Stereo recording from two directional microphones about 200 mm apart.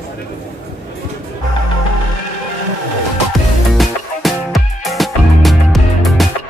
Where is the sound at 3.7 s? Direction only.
Centre (ahead or behind).